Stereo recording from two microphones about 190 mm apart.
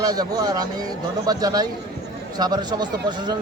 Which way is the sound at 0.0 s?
20° right (ahead or behind).